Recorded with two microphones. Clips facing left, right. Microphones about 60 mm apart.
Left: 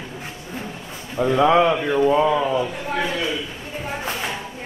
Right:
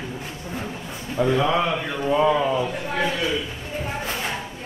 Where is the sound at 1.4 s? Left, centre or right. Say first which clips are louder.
Left 6 dB; left.